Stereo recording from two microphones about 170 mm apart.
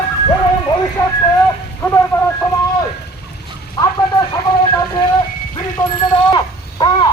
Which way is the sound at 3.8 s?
25° left (ahead or behind).